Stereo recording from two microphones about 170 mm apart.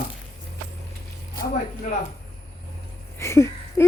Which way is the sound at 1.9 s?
50° left (ahead or behind).